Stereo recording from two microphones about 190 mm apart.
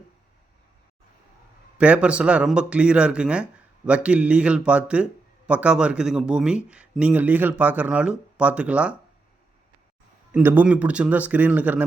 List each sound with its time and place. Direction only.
1.8 s speech: 5° right (ahead or behind)
10.3 s speech: 10° right (ahead or behind)